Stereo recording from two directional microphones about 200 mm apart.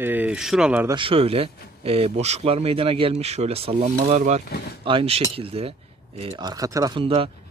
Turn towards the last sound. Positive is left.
turn(degrees=-25)  # may be behind; listen again after turning